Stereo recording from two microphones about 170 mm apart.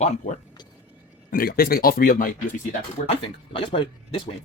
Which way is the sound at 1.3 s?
60° left (ahead or behind).